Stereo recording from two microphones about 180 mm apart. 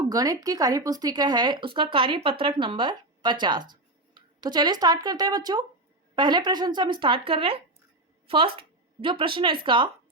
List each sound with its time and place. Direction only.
0.1 s speech: 20° right (ahead or behind)